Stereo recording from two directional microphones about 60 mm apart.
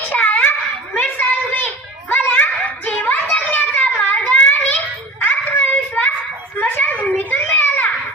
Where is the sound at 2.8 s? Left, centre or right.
Left.